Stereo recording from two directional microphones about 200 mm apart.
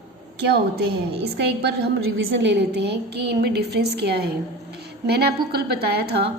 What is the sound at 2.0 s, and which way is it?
A woman's voice, 70° right (ahead or behind).